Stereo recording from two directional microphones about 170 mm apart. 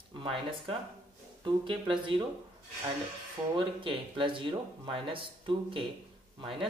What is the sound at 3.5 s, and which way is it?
Speech, 30° right (ahead or behind).